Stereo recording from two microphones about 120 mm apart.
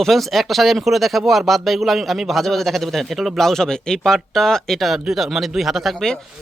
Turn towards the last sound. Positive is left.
turn(degrees=0)  # may be behind; listen again after turning